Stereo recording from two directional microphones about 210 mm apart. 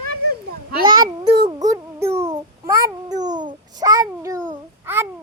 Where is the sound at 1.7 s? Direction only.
15° right (ahead or behind).